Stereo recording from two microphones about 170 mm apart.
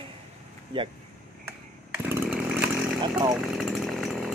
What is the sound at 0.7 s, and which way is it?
Speech, 30° right (ahead or behind).